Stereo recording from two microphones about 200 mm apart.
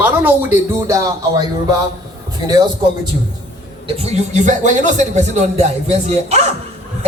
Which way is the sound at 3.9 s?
30° right (ahead or behind).